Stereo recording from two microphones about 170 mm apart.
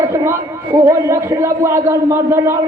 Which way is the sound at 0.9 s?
15° right (ahead or behind).